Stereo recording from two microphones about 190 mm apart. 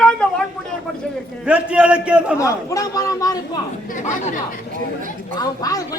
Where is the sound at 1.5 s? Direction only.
5° right (ahead or behind).